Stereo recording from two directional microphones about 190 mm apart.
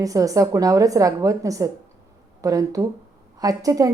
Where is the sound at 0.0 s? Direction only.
20° right (ahead or behind).